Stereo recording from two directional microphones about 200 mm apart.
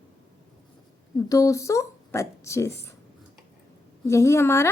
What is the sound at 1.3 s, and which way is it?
A woman's voice, 15° left (ahead or behind).